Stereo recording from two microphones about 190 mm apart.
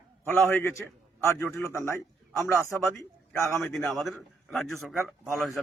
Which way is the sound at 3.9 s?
Centre (ahead or behind).